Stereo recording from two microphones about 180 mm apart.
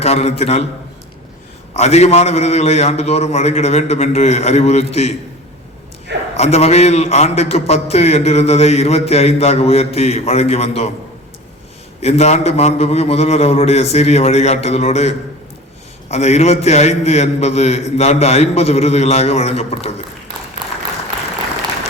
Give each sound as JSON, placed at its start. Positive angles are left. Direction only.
{"t": 0.0, "sound": "a man's voice", "side_deg": 35}
{"t": 1.7, "sound": "a man's voice", "side_deg": 35}
{"t": 6.3, "sound": "a man's voice", "side_deg": 35}
{"t": 11.9, "sound": "a man's voice", "side_deg": 35}
{"t": 20.6, "sound": "a sound", "side_deg": -25}